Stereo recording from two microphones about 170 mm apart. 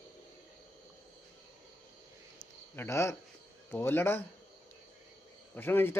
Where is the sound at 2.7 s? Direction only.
15° left (ahead or behind).